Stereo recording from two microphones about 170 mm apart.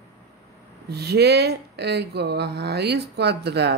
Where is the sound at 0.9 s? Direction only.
70° right (ahead or behind).